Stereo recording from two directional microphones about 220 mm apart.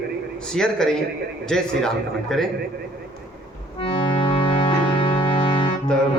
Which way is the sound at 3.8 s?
25° left (ahead or behind).